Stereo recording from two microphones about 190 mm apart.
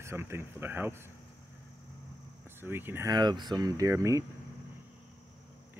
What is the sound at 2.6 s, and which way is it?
Speech, 10° right (ahead or behind).